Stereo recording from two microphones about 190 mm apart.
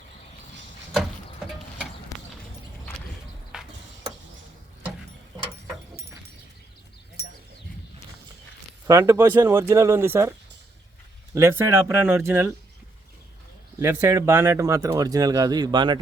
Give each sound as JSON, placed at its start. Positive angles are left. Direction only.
{"t": 8.9, "sound": "speech", "side_deg": -15}
{"t": 11.3, "sound": "speech", "side_deg": -15}
{"t": 13.7, "sound": "speech", "side_deg": -15}